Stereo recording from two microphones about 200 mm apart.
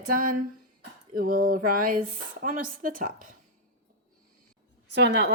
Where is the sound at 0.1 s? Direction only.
45° right (ahead or behind).